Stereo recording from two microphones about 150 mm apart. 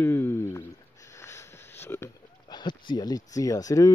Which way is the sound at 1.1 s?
20° left (ahead or behind).